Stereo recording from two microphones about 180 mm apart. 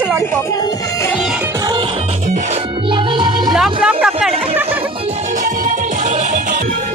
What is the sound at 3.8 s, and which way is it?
Speech, 5° right (ahead or behind).